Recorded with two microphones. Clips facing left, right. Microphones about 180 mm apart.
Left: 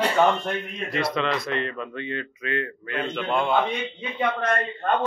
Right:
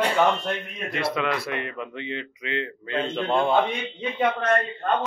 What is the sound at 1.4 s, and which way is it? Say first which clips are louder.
A man's voice: left 2 dB; 15° right (ahead or behind).